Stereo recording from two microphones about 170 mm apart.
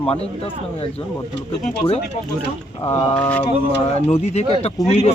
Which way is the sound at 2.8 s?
40° left (ahead or behind).